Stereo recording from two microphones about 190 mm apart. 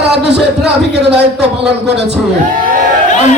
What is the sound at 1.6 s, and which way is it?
Speech, 60° right (ahead or behind).